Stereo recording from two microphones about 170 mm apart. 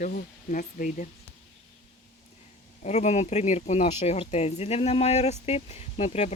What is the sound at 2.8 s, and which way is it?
Speech, 40° left (ahead or behind).